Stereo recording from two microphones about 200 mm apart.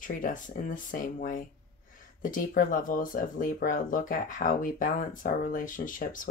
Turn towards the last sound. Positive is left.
turn(degrees=45)  # may be behind; listen again after turning